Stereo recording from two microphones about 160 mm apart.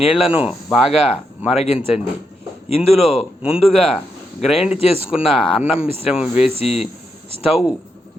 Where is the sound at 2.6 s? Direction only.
40° left (ahead or behind).